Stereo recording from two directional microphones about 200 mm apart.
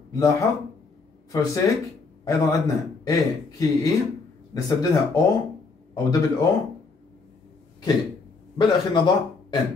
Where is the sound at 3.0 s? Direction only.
15° left (ahead or behind).